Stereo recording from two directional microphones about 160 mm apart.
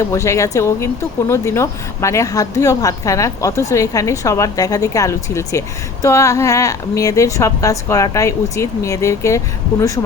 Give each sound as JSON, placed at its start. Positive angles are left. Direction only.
{"t": 0.0, "sound": "a woman's voice", "side_deg": 20}